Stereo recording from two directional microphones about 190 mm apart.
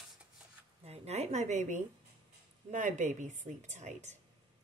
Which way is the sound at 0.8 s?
35° right (ahead or behind).